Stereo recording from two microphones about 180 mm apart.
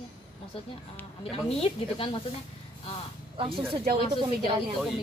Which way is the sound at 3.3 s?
30° right (ahead or behind).